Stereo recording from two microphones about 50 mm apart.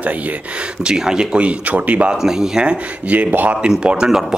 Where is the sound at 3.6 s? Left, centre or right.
Right.